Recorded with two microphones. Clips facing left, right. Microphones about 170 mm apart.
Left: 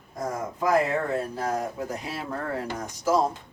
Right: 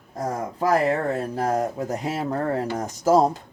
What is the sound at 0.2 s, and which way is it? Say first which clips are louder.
Speech: right 3 dB; 35° right (ahead or behind).